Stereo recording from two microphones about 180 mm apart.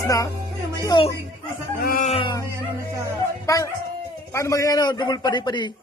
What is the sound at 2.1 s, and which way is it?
Music, 30° left (ahead or behind).